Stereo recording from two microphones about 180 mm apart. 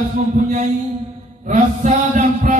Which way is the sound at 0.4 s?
45° right (ahead or behind).